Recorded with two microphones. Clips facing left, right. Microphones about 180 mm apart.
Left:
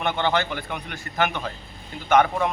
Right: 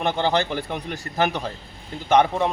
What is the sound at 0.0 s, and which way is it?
A man's voice, 35° right (ahead or behind).